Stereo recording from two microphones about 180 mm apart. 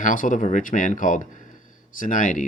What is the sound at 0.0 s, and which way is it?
Speech, 45° left (ahead or behind).